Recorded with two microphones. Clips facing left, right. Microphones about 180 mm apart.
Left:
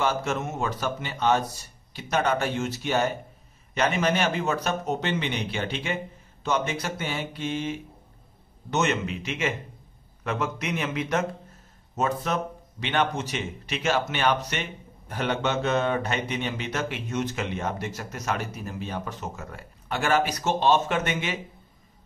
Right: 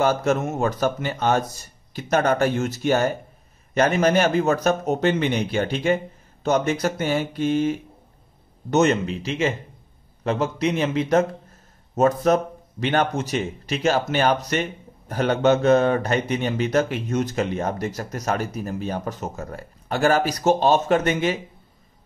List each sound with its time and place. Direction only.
0.0 s speech: 40° right (ahead or behind)
11.9 s speech: 45° right (ahead or behind)